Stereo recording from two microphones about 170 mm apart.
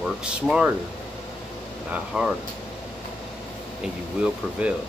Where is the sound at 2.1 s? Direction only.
Centre (ahead or behind).